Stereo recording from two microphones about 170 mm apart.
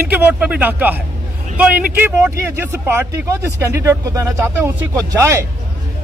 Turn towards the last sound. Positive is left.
turn(degrees=-20)  # may be behind; listen again after turning